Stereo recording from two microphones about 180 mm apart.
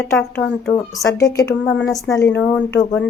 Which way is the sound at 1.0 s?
15° left (ahead or behind).